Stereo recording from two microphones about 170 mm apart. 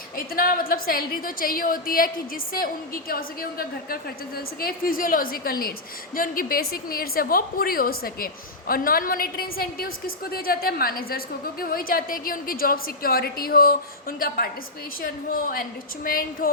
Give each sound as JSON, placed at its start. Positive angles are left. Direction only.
{"t": 0.2, "sound": "a woman's voice", "side_deg": 55}